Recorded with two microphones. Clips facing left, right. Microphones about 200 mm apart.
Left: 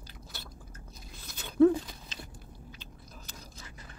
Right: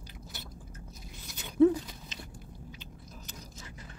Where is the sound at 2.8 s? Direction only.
20° right (ahead or behind).